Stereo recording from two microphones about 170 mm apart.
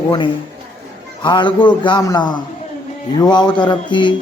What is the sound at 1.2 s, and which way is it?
A man's voice, 25° left (ahead or behind).